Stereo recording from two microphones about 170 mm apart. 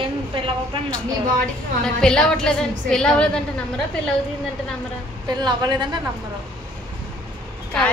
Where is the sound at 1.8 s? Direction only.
5° left (ahead or behind).